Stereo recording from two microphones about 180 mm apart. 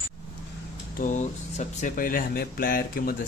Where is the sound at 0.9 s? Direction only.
45° left (ahead or behind).